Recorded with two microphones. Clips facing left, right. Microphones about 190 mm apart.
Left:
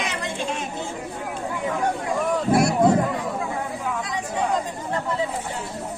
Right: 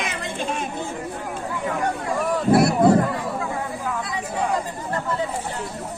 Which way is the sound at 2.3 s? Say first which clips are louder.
Right 3 dB; 5° right (ahead or behind).